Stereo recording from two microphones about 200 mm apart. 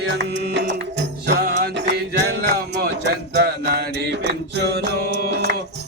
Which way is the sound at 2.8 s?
55° right (ahead or behind).